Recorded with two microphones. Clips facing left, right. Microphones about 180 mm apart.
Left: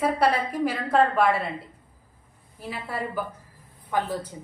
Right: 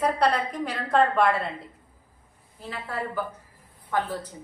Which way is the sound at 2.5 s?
10° left (ahead or behind).